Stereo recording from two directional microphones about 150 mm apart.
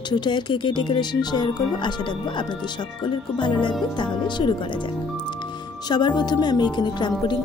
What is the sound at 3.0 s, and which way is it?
Speech, 30° left (ahead or behind).